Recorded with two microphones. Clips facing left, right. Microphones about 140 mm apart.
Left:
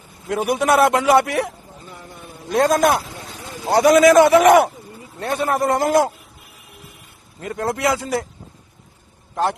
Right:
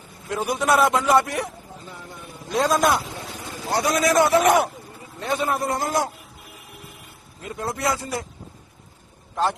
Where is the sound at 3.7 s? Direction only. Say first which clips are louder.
Left 9 dB; 80° left.